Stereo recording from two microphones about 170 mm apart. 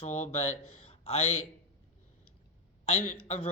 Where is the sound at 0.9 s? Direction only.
35° left (ahead or behind).